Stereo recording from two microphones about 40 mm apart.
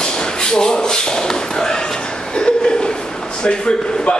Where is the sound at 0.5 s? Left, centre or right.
Centre.